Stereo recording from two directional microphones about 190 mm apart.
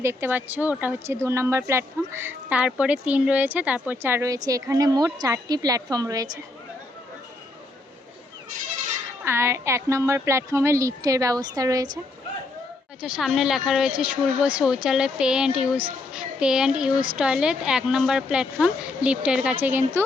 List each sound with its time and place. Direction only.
0.0 s a woman's voice: 15° right (ahead or behind)
9.2 s speech: 15° right (ahead or behind)
13.0 s speech: 5° right (ahead or behind)